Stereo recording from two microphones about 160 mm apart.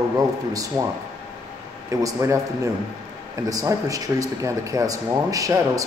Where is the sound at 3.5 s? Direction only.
20° right (ahead or behind).